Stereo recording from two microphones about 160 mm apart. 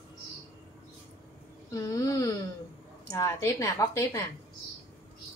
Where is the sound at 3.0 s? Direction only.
20° left (ahead or behind).